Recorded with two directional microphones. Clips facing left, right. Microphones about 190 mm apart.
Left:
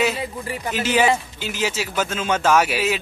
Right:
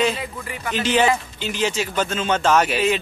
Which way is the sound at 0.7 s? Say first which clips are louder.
Even; 10° left (ahead or behind).